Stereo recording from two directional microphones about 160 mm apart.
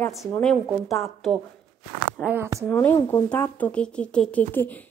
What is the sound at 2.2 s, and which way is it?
Speech, 15° right (ahead or behind).